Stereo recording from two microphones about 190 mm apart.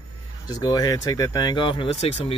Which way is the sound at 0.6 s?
20° left (ahead or behind).